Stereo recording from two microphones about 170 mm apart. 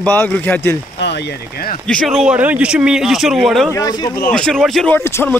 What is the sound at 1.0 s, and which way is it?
Speech, 80° left.